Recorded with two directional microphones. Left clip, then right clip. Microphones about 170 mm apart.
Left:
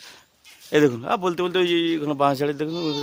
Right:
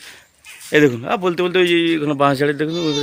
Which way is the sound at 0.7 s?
20° left (ahead or behind).